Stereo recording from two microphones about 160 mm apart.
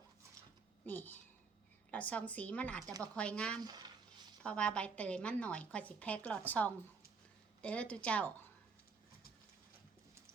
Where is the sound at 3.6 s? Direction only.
25° right (ahead or behind).